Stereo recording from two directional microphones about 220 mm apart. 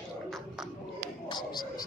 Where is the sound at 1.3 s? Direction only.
20° left (ahead or behind).